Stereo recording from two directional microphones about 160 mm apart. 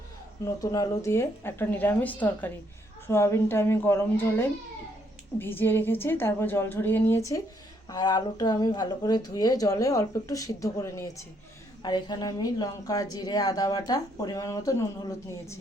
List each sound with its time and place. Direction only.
0.4 s a woman's voice: 20° left (ahead or behind)